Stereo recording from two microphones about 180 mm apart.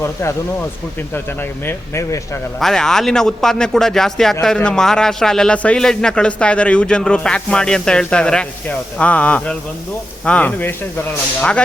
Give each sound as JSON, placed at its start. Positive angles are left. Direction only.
{"t": 0.0, "sound": "speech", "side_deg": 15}
{"t": 2.6, "sound": "speech", "side_deg": 0}